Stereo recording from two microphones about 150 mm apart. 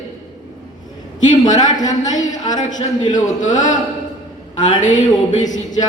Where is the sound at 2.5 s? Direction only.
55° left (ahead or behind).